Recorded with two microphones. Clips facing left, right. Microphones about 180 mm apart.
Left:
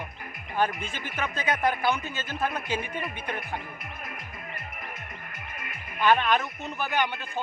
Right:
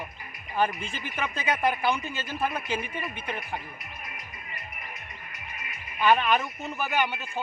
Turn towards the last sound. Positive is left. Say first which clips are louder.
# even
turn(degrees=-10)  # may be behind; listen again after turning